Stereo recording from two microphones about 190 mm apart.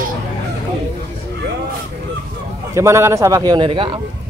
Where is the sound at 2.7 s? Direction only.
15° right (ahead or behind).